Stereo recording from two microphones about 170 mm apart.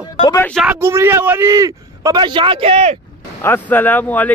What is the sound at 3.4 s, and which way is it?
Speech, 10° left (ahead or behind).